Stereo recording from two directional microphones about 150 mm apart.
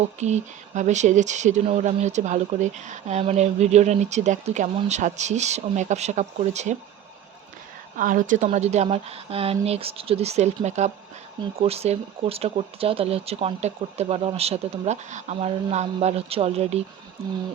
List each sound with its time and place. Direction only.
0.2 s speech: 50° right (ahead or behind)
7.9 s a woman's voice: 60° right (ahead or behind)
8.5 s speech: 50° right (ahead or behind)